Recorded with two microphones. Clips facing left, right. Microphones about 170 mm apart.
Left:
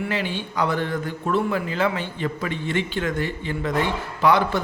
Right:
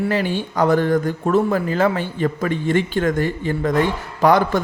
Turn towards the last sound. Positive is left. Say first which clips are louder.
# right 4 dB
turn(degrees=-45)  # may be behind; listen again after turning